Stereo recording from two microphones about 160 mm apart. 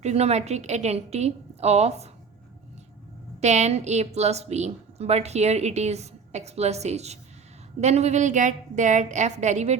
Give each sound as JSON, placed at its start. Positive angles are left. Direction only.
{"t": 0.0, "sound": "a woman's voice", "side_deg": -40}
{"t": 3.4, "sound": "a woman's voice", "side_deg": -45}